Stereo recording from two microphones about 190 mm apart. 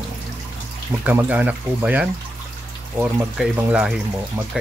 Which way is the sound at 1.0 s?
10° right (ahead or behind).